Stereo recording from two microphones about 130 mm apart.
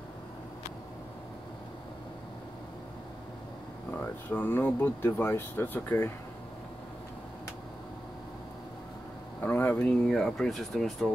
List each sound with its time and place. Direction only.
3.9 s speech: 15° left (ahead or behind)
9.4 s speech: 15° left (ahead or behind)